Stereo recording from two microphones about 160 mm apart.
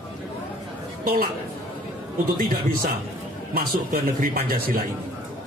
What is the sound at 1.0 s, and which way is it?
Speech, 65° right (ahead or behind).